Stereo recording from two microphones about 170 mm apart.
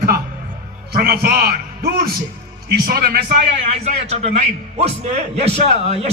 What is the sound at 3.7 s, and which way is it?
A man's voice, 40° right (ahead or behind).